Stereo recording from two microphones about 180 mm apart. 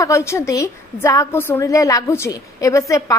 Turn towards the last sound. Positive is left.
turn(degrees=15)  # may be behind; listen again after turning